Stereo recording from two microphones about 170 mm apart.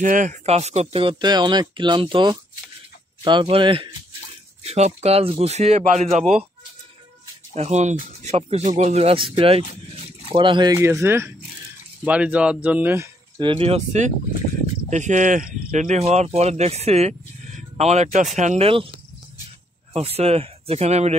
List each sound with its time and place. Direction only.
0.0 s speech: 50° right (ahead or behind)
7.5 s speech: 40° right (ahead or behind)
10.8 s speech: 15° right (ahead or behind)
13.4 s speech: 30° right (ahead or behind)
19.9 s speech: 35° right (ahead or behind)